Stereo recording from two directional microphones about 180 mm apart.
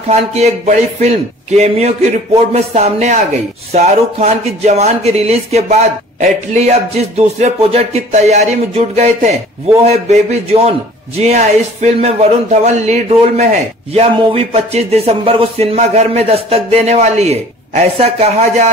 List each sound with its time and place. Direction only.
0.1 s speech: 35° right (ahead or behind)